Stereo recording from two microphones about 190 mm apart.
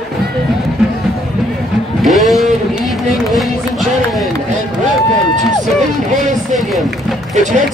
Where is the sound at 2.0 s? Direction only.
Centre (ahead or behind).